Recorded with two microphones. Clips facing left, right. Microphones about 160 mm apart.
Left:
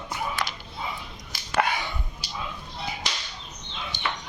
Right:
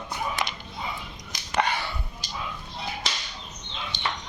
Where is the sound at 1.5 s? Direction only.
10° left (ahead or behind).